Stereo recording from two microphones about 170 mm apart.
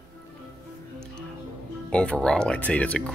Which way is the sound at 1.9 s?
5° left (ahead or behind).